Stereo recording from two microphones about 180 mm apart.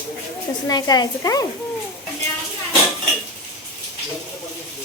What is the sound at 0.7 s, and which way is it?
Speech, 20° left (ahead or behind).